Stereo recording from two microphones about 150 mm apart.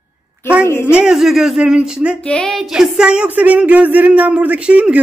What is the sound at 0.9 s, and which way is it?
Speech, 5° right (ahead or behind).